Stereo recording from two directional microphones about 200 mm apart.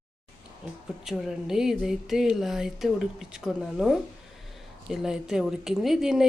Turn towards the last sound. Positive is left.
turn(degrees=-5)  # may be behind; listen again after turning